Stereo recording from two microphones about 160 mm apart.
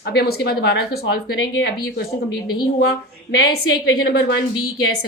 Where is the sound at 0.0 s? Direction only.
85° left.